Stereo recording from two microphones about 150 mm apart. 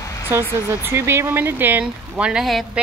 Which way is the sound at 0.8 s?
15° right (ahead or behind).